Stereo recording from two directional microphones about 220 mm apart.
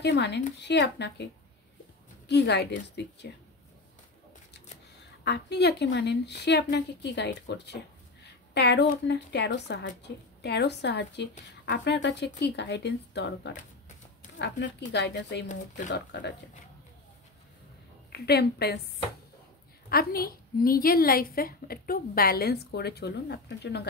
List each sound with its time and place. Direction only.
0.0 s a woman's voice: 50° left (ahead or behind)
2.2 s a woman's voice: 50° left (ahead or behind)
5.2 s a woman's voice: 50° left (ahead or behind)
18.1 s a woman's voice: 45° left (ahead or behind)
19.9 s a woman's voice: 45° left (ahead or behind)